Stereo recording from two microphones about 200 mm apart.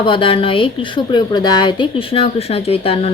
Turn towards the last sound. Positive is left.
turn(degrees=30)  # may be behind; listen again after turning